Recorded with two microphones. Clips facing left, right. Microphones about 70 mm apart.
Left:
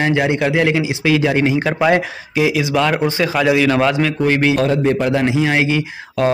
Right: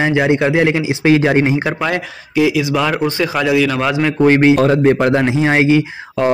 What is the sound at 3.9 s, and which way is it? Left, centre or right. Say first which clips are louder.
Speech: right 1 dB; centre.